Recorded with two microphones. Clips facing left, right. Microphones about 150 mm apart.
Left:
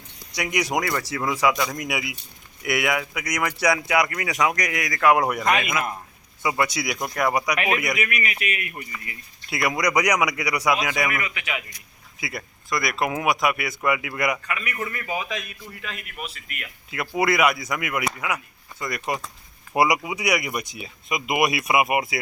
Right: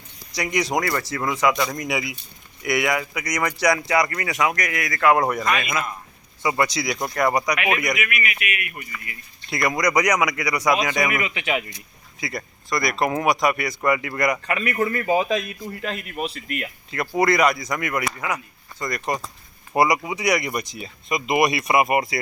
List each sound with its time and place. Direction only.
0.3 s speech: 5° left (ahead or behind)
7.9 s speech: 35° left (ahead or behind)
9.5 s speech: 5° left (ahead or behind)
10.9 s speech: 20° right (ahead or behind)
12.2 s speech: 5° left (ahead or behind)
14.4 s a man's voice: 30° right (ahead or behind)
17.2 s speech: 5° left (ahead or behind)